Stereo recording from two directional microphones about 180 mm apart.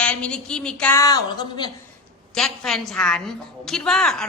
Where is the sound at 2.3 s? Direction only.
5° left (ahead or behind).